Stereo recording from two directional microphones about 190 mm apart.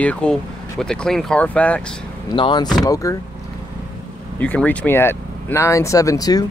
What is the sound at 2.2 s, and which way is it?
Speech, 25° left (ahead or behind).